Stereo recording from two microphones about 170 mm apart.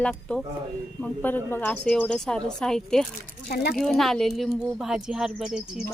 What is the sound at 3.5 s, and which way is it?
Speech, 70° left (ahead or behind).